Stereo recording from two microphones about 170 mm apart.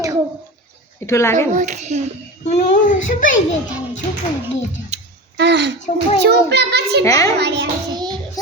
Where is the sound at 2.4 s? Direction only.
40° left (ahead or behind).